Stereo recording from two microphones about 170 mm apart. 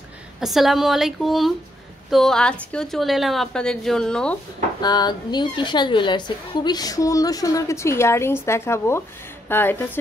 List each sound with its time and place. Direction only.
0.4 s a woman's voice: centre (ahead or behind)
4.8 s a woman's voice: 25° left (ahead or behind)